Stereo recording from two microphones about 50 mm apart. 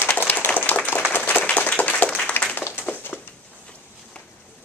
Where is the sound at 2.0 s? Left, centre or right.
Left.